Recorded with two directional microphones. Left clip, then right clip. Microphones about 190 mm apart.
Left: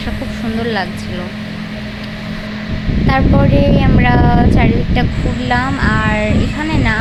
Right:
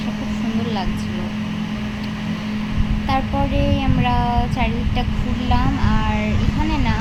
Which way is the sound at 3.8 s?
15° left (ahead or behind).